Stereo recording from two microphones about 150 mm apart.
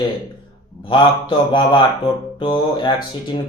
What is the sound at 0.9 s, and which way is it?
Speech, 30° left (ahead or behind).